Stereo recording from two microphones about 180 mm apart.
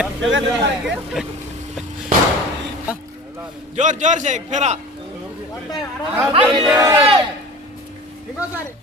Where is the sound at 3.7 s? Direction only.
45° right (ahead or behind).